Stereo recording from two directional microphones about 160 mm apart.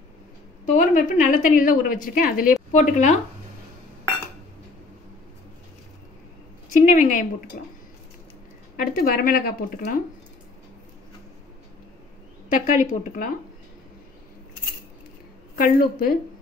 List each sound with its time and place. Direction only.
0.7 s a woman's voice: 50° left (ahead or behind)
2.7 s speech: 50° left (ahead or behind)
6.7 s speech: 50° left (ahead or behind)
8.7 s a woman's voice: 65° left (ahead or behind)
12.4 s speech: 55° left (ahead or behind)
15.5 s a woman's voice: 65° left (ahead or behind)